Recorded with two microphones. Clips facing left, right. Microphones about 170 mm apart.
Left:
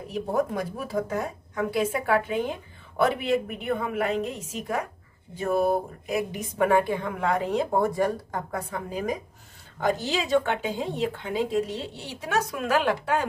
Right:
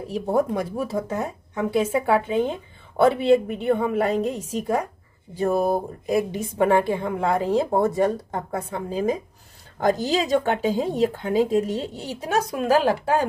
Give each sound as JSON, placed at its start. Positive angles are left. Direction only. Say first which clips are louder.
{"t": 1.0, "sound": "speech", "louder": "right 2 dB", "side_deg": -25}
{"t": 9.8, "sound": "speech", "louder": "right 5 dB", "side_deg": -40}